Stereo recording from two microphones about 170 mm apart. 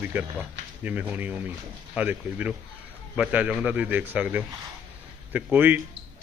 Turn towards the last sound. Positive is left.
turn(degrees=-10)  # may be behind; listen again after turning